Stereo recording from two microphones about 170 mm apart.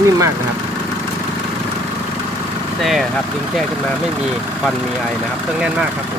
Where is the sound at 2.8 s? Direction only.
Centre (ahead or behind).